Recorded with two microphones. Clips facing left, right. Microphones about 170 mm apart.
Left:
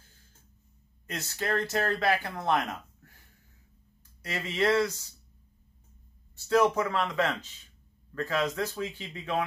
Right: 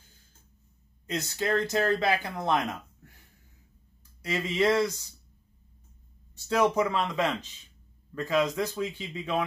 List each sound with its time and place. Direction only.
1.0 s speech: 15° right (ahead or behind)
4.2 s speech: 15° right (ahead or behind)
6.5 s speech: 15° right (ahead or behind)